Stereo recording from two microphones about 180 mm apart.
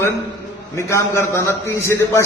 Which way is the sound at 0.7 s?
15° left (ahead or behind).